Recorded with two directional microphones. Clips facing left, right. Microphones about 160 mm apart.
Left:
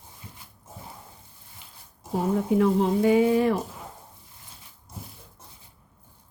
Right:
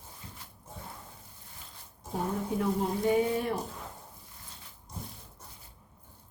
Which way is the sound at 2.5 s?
90° left.